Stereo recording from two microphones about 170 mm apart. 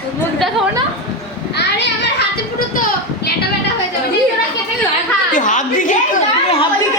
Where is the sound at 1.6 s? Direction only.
90° left.